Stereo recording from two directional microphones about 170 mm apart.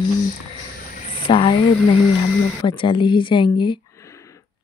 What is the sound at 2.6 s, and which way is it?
Speech, 30° left (ahead or behind).